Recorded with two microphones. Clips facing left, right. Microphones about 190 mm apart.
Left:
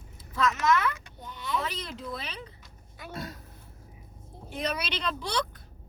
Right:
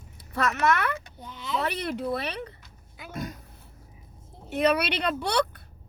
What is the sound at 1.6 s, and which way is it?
Speech, 65° right (ahead or behind).